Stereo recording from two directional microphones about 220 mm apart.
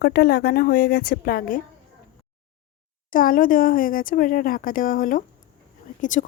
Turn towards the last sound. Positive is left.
turn(degrees=35)  # may be behind; listen again after turning